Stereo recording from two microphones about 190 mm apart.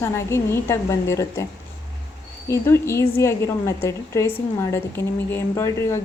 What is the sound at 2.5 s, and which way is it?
A woman's voice, 15° left (ahead or behind).